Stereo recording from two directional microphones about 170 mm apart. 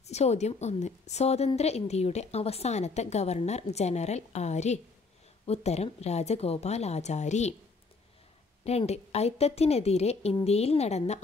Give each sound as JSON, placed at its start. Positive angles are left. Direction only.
{"t": 0.0, "sound": "a woman's voice", "side_deg": 40}
{"t": 8.6, "sound": "a woman's voice", "side_deg": 40}